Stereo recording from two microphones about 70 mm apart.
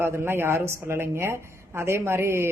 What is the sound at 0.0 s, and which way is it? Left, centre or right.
Speech, right.